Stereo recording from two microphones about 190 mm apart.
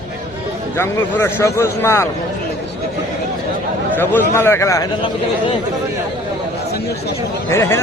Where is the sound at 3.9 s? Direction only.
10° left (ahead or behind).